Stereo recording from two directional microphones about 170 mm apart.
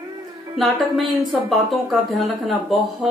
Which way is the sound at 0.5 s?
Centre (ahead or behind).